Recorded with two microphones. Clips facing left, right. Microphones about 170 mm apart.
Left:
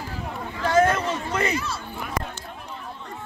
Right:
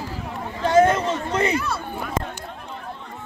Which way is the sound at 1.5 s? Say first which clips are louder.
Right 4 dB; 55° right (ahead or behind).